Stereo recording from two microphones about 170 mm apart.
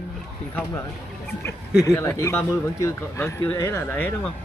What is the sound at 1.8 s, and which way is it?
Speech, 15° left (ahead or behind).